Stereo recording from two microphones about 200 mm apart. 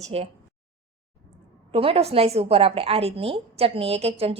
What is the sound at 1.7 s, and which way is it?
A woman's voice, 30° right (ahead or behind).